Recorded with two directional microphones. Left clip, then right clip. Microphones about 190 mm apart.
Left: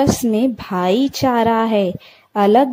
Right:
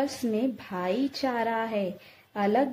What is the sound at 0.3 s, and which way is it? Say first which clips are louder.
A woman's voice: left 11 dB; 40° left (ahead or behind).